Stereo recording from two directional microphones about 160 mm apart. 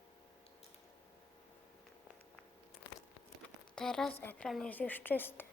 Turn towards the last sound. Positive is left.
turn(degrees=15)  # may be behind; listen again after turning